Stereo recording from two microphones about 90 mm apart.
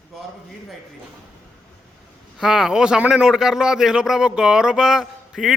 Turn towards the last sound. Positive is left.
turn(degrees=-5)  # may be behind; listen again after turning